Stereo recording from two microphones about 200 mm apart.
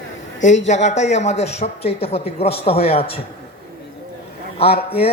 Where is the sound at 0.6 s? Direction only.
35° left (ahead or behind).